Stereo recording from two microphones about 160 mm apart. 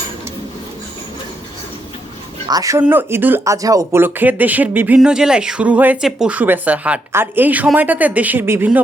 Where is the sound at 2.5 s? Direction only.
20° right (ahead or behind).